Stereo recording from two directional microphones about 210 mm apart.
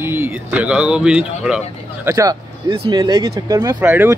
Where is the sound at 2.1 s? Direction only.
15° right (ahead or behind).